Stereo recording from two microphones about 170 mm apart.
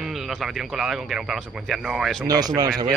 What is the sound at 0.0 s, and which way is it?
Speech, centre (ahead or behind).